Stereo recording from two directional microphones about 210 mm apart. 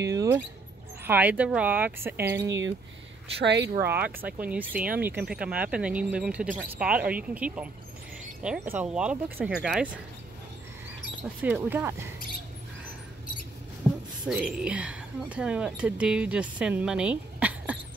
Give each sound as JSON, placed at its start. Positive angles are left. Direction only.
{"t": 0.1, "sound": "rodents", "side_deg": -15}
{"t": 1.0, "sound": "speech", "side_deg": -10}
{"t": 2.4, "sound": "speech", "side_deg": -60}
{"t": 3.7, "sound": "speech", "side_deg": -10}
{"t": 11.2, "sound": "speech", "side_deg": -5}
{"t": 14.2, "sound": "speech", "side_deg": -5}